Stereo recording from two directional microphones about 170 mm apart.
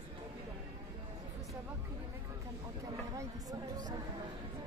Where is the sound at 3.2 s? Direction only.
20° right (ahead or behind).